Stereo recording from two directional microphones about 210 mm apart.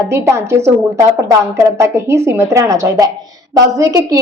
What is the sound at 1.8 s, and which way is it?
Speech, 10° right (ahead or behind).